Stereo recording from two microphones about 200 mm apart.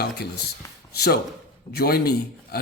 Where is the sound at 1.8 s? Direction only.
50° left (ahead or behind).